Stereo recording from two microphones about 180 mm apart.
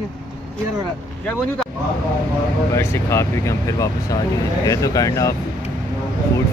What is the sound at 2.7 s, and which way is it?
Speech, 15° left (ahead or behind).